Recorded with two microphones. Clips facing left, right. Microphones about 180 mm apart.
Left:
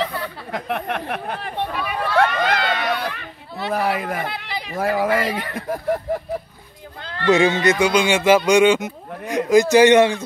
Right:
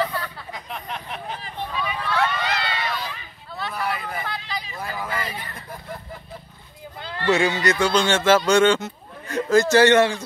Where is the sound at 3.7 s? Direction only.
90° left.